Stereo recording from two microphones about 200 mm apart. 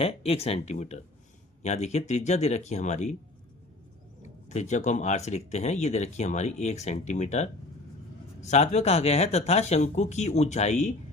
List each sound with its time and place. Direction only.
0.0 s speech: 30° left (ahead or behind)
4.2 s speech: 35° left (ahead or behind)